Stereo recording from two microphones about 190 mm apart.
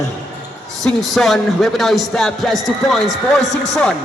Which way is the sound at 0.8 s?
Centre (ahead or behind).